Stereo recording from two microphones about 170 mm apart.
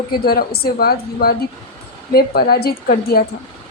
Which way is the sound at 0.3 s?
65° left (ahead or behind).